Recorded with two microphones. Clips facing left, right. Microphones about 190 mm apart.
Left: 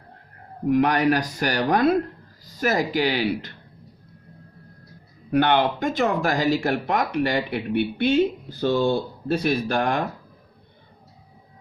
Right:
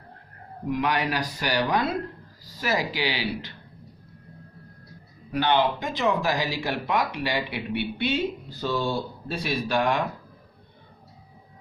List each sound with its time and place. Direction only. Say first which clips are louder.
0.7 s speech: left 7 dB; 45° left (ahead or behind)
5.3 s speech: left 3 dB; 55° left (ahead or behind)